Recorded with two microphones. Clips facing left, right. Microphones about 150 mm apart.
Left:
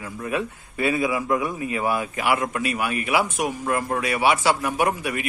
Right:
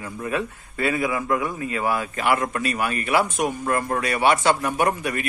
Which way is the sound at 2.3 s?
5° left (ahead or behind).